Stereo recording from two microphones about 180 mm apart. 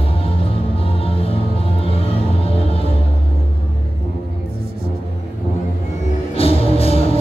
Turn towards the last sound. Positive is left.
turn(degrees=30)  # may be behind; listen again after turning